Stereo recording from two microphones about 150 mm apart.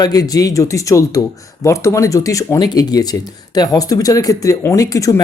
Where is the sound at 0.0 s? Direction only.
25° left (ahead or behind).